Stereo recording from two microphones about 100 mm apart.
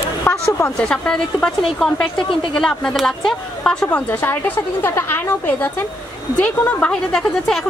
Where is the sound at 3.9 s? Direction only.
20° left (ahead or behind).